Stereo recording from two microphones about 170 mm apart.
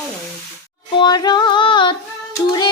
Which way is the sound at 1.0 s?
25° left (ahead or behind).